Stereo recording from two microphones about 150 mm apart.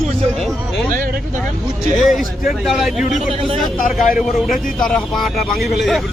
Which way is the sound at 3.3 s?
40° right (ahead or behind).